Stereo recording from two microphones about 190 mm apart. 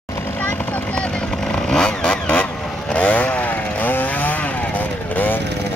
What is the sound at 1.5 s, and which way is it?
Motorcycle, 5° left (ahead or behind).